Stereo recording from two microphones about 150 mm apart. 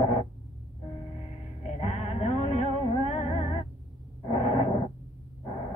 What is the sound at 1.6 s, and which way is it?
Music, 45° left (ahead or behind).